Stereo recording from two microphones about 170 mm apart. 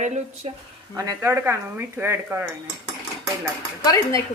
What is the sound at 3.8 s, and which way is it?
Speech, 20° left (ahead or behind).